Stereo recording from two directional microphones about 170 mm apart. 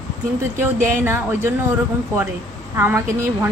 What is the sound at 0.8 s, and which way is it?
Speech, 15° right (ahead or behind).